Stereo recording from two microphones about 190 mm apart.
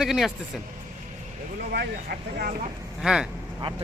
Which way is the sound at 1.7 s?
55° right (ahead or behind).